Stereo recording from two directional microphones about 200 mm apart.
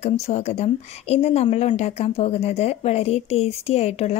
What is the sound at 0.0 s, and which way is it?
A woman's voice, 35° left (ahead or behind).